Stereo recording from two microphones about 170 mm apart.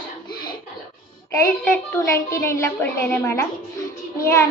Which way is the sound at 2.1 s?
15° left (ahead or behind).